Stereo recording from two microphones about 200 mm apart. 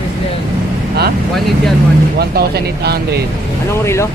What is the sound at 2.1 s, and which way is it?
Speech, 50° right (ahead or behind).